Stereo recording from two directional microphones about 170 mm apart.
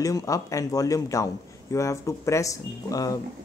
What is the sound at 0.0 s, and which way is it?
A man's voice, 20° left (ahead or behind).